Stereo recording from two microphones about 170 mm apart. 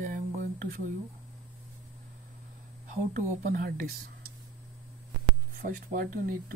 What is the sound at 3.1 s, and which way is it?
Speech, 50° right (ahead or behind).